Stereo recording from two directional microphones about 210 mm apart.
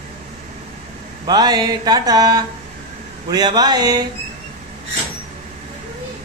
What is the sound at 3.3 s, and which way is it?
Speech, 20° right (ahead or behind).